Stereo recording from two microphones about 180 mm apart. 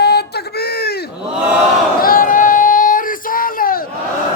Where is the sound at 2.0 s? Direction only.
55° left (ahead or behind).